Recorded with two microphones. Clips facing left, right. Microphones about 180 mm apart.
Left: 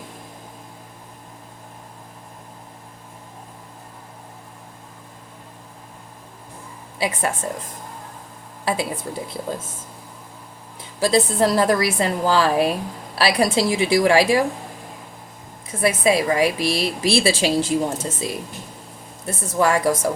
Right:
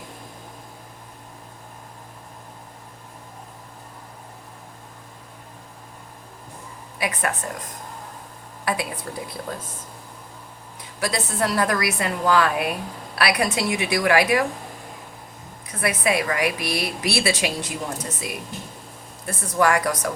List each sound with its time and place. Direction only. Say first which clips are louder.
7.0 s a woman's voice: left 3 dB; 25° left (ahead or behind)
8.6 s a woman's voice: left 3 dB; 25° left (ahead or behind)
11.0 s a woman's voice: left 7 dB; 30° left (ahead or behind)
15.8 s a woman's voice: left 4 dB; 25° left (ahead or behind)